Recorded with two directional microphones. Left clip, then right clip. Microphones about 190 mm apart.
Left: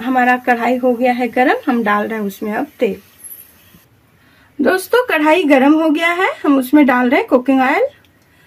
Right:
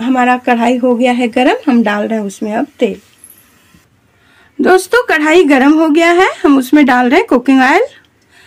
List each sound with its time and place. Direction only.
0.0 s speech: 30° right (ahead or behind)
4.6 s a woman's voice: 45° right (ahead or behind)